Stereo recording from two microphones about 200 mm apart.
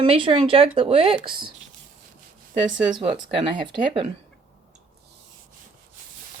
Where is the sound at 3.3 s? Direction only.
25° right (ahead or behind).